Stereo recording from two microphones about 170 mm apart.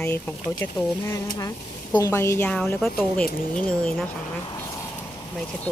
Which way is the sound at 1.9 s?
20° left (ahead or behind).